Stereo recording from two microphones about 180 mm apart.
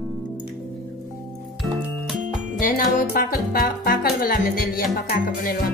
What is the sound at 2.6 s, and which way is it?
Speech, 50° left (ahead or behind).